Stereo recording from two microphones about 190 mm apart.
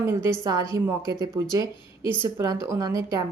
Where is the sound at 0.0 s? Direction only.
15° right (ahead or behind).